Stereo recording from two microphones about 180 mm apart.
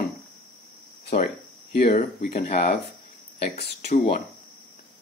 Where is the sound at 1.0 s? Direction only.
60° left (ahead or behind).